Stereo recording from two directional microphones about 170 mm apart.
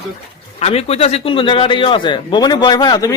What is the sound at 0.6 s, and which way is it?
A man's voice, 35° left (ahead or behind).